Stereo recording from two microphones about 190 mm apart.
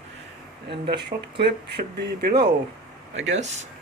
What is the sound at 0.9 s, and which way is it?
Speech, 60° right (ahead or behind).